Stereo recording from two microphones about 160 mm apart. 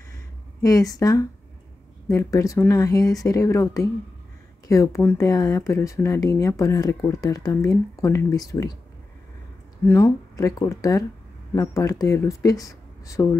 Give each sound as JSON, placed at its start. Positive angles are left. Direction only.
{"t": 0.6, "sound": "speech", "side_deg": 20}
{"t": 9.8, "sound": "speech", "side_deg": 15}